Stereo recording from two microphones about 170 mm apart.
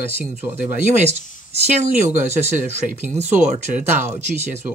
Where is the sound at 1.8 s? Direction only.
40° right (ahead or behind).